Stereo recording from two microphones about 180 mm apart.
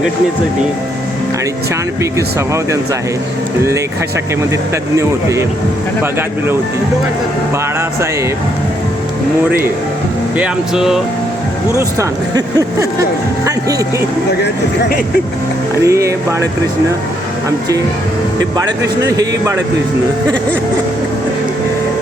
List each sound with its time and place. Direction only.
2.1 s speech: 15° right (ahead or behind)
4.9 s speech: 15° right (ahead or behind)
10.3 s speech: 5° right (ahead or behind)
11.7 s speech: 15° right (ahead or behind)
15.8 s speech: 15° right (ahead or behind)
19.0 s speech: 20° right (ahead or behind)